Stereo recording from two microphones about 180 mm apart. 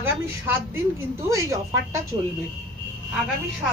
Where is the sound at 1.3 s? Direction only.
15° right (ahead or behind).